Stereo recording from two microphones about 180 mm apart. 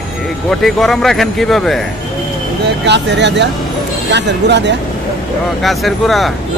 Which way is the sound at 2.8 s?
70° right (ahead or behind).